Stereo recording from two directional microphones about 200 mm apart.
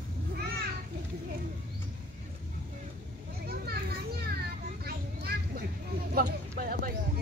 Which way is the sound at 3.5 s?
50° right (ahead or behind).